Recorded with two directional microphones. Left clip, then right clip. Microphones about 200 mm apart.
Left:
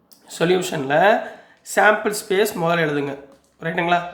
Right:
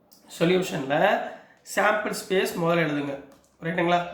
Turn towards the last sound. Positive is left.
turn(degrees=50)  # may be behind; listen again after turning